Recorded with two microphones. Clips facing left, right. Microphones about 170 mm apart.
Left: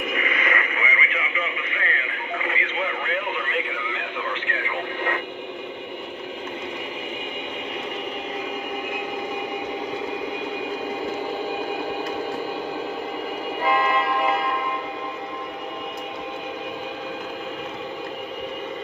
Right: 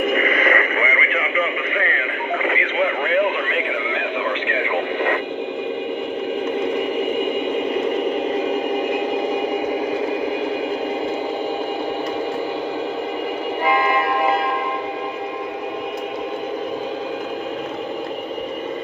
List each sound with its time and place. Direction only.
0.0 s radio: 50° right (ahead or behind); by 4.4 s 80° right
13.7 s vehicle: centre (ahead or behind)